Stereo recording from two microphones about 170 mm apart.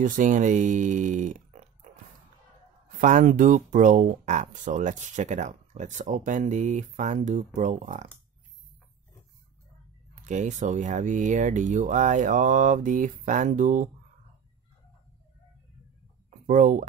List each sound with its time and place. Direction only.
0.0 s speech: 50° right (ahead or behind)
3.0 s speech: 50° right (ahead or behind)
10.1 s speech: 45° right (ahead or behind)
16.4 s speech: 50° right (ahead or behind)